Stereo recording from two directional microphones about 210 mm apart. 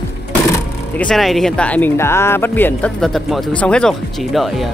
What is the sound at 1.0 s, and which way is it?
Speech, centre (ahead or behind).